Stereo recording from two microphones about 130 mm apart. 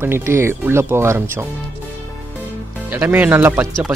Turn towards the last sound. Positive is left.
turn(degrees=-15)  # may be behind; listen again after turning